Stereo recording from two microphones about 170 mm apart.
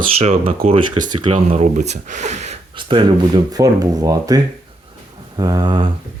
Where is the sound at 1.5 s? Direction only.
45° right (ahead or behind).